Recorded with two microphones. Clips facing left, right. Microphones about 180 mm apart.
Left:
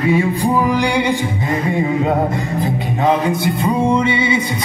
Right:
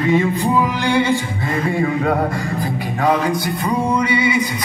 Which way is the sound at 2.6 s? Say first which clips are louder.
Left 2 dB; 25° left (ahead or behind).